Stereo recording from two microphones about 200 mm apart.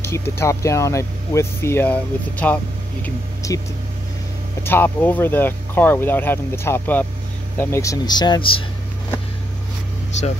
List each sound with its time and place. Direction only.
0.0 s speech: 10° left (ahead or behind)
4.6 s speech: 10° left (ahead or behind); by 8.6 s 25° left (ahead or behind)